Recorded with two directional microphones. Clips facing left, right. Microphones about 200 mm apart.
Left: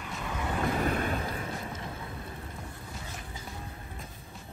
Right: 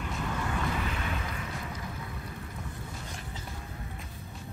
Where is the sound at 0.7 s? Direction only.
45° left (ahead or behind); by 1.9 s 30° left (ahead or behind).